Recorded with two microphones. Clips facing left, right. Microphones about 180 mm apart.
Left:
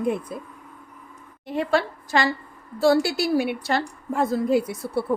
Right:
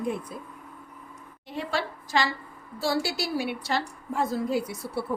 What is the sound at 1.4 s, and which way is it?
A woman's voice, 55° left (ahead or behind).